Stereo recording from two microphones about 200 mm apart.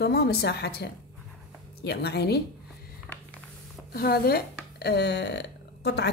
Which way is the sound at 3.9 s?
50° left (ahead or behind).